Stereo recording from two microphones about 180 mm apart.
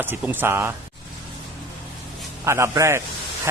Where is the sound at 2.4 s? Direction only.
15° right (ahead or behind).